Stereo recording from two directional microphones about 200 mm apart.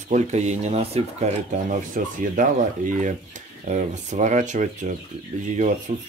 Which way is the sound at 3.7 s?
35° right (ahead or behind).